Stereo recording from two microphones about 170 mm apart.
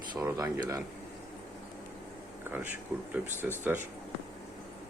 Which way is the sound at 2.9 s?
10° right (ahead or behind).